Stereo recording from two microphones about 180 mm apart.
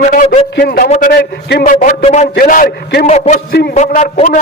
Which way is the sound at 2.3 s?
55° left (ahead or behind).